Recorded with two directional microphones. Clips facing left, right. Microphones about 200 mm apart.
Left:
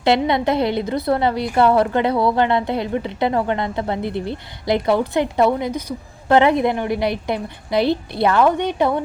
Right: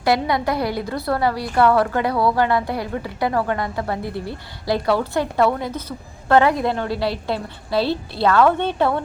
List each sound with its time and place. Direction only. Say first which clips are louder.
0.0 s a woman's voice: left 2 dB; 25° left (ahead or behind)